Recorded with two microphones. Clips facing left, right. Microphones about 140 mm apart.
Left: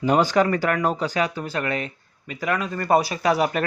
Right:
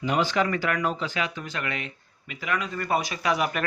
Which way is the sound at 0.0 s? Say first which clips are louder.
Left 6 dB; 40° left (ahead or behind).